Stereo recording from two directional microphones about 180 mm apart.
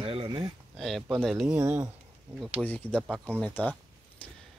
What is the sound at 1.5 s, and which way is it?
Speech, 10° right (ahead or behind).